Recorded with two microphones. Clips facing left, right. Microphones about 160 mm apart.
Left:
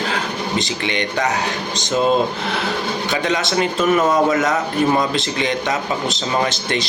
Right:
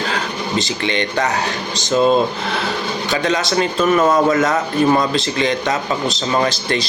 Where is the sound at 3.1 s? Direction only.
20° left (ahead or behind).